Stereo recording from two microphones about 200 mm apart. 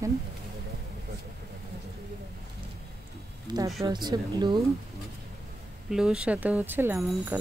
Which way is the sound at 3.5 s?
20° right (ahead or behind).